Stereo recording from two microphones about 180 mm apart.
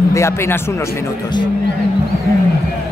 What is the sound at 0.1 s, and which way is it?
Speech, 15° left (ahead or behind).